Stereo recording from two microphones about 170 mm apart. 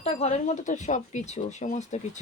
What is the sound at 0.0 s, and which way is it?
A woman's voice, 40° left (ahead or behind).